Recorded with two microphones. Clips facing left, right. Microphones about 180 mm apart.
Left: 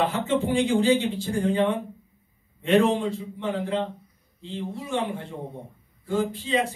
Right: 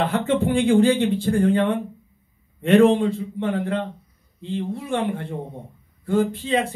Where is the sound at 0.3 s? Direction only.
55° right (ahead or behind).